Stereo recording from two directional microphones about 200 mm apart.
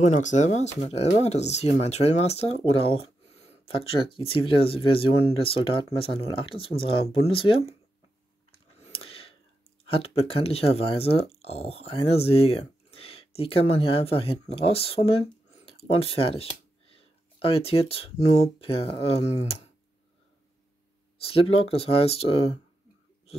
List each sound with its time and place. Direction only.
0.0 s speech: 35° left (ahead or behind)
8.7 s a sound: 30° left (ahead or behind)
9.8 s speech: 30° left (ahead or behind)
21.2 s speech: 30° left (ahead or behind)